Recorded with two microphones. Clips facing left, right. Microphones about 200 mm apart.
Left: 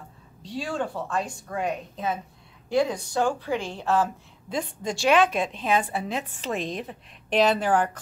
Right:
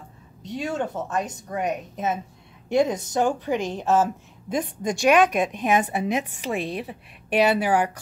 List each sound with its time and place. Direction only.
0.4 s a woman's voice: 20° right (ahead or behind)